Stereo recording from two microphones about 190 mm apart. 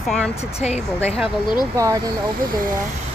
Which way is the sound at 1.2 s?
25° left (ahead or behind).